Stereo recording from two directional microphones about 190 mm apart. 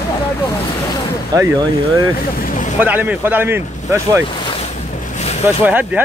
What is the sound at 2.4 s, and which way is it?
Vehicle, 45° left (ahead or behind).